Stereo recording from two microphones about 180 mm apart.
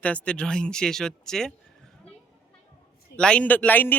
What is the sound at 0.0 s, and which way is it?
Speech, 5° left (ahead or behind).